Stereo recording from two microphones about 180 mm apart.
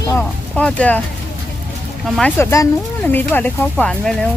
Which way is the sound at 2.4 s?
15° left (ahead or behind).